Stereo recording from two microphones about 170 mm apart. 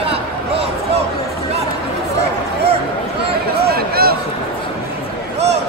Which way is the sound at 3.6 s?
65° right (ahead or behind).